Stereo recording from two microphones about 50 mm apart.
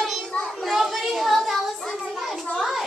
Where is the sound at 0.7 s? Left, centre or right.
Centre.